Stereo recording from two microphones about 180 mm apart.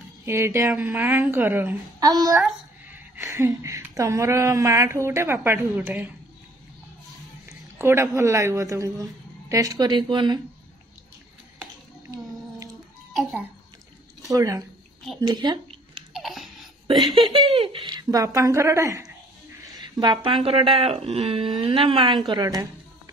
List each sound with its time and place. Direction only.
0.2 s a woman's voice: 15° right (ahead or behind)
2.0 s a woman's voice: 20° right (ahead or behind)
2.3 s a sound: centre (ahead or behind)
3.2 s a woman's voice: 15° right (ahead or behind)
7.8 s a woman's voice: 15° right (ahead or behind)
13.1 s a child's voice: centre (ahead or behind)
14.3 s a woman's voice: 20° right (ahead or behind)
15.1 s a sound: 25° right (ahead or behind)
16.1 s babbling: centre (ahead or behind)
17.3 s a woman's voice: 30° right (ahead or behind)